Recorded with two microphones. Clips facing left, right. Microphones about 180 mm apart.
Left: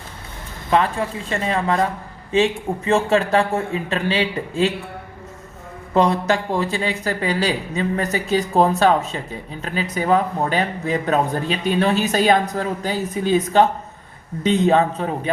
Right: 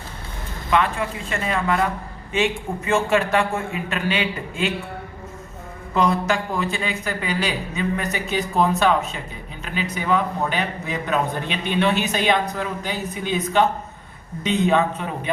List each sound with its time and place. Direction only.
0.7 s speech: 35° left (ahead or behind)
5.9 s speech: 30° left (ahead or behind)